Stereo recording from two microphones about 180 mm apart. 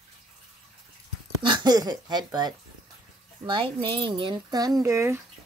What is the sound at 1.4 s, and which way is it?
Speech, 25° right (ahead or behind).